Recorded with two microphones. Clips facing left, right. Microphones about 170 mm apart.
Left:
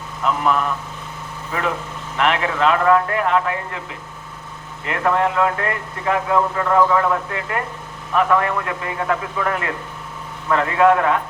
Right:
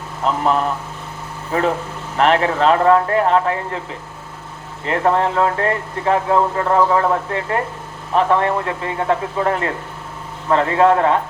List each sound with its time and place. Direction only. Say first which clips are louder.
0.2 s speech: right 2 dB; 35° right (ahead or behind)
4.9 s speech: right 2 dB; 30° right (ahead or behind)